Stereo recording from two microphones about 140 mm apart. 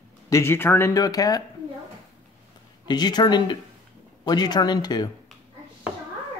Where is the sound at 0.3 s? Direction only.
20° left (ahead or behind).